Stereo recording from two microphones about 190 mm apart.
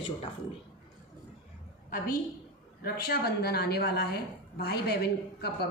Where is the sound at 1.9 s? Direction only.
50° left (ahead or behind).